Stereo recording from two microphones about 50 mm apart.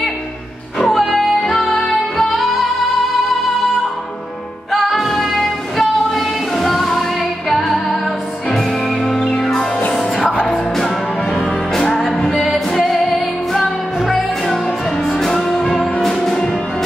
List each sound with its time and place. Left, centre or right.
0.7 s music: centre
4.7 s music: centre
11.3 s music: centre